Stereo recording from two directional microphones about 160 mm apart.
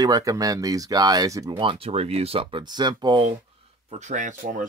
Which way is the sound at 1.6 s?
35° right (ahead or behind).